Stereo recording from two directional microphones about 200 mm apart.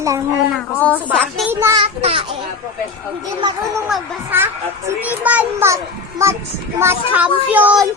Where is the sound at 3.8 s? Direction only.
5° right (ahead or behind).